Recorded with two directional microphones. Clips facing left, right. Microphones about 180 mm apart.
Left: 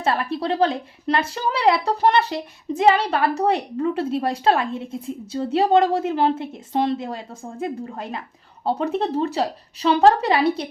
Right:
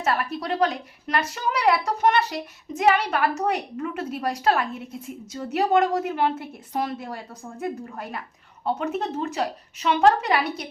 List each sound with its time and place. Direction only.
0.0 s a woman's voice: 30° left (ahead or behind)